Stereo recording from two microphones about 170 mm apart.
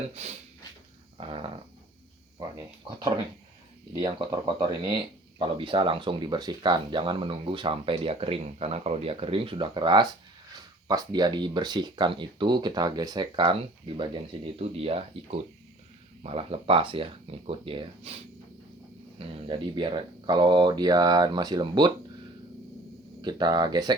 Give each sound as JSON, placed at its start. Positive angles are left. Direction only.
{"t": 0.1, "sound": "speech", "side_deg": -40}
{"t": 19.2, "sound": "speech", "side_deg": -30}
{"t": 23.2, "sound": "speech", "side_deg": -25}